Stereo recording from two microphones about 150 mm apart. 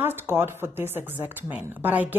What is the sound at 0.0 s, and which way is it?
Speech, 15° right (ahead or behind).